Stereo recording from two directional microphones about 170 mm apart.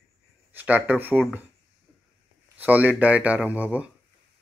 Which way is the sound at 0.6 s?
10° right (ahead or behind).